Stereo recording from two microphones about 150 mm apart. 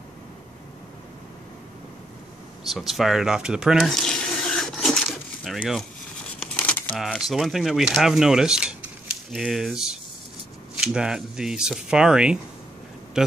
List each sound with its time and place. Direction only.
2.7 s water: centre (ahead or behind)
6.4 s crumpling: 10° left (ahead or behind)
6.9 s speech: centre (ahead or behind)